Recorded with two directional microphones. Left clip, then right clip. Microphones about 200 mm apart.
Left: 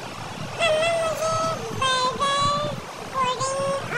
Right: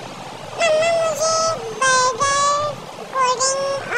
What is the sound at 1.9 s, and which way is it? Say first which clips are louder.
Child singing: right 5 dB; 25° right (ahead or behind).